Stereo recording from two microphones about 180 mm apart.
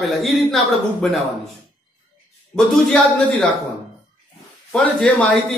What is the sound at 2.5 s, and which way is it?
Speech, 5° left (ahead or behind).